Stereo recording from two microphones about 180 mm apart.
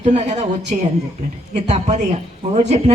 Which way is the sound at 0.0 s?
40° right (ahead or behind).